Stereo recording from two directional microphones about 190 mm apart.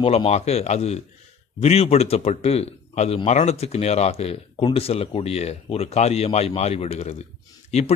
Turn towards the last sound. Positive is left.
turn(degrees=35)  # may be behind; listen again after turning